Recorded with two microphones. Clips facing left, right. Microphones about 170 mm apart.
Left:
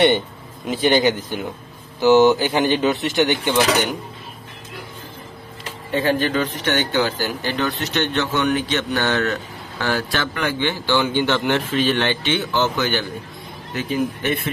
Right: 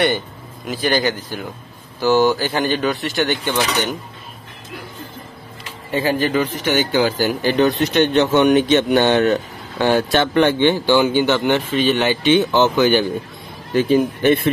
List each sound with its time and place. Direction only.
0.7 s speech: 25° left (ahead or behind)
5.9 s speech: 5° right (ahead or behind)
11.1 s speech: 5° right (ahead or behind)
13.7 s speech: 30° right (ahead or behind)